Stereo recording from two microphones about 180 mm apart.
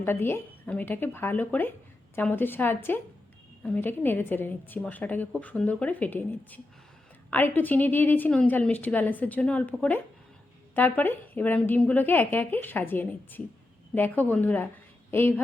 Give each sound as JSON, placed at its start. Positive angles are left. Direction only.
{"t": 0.0, "sound": "a woman's voice", "side_deg": 10}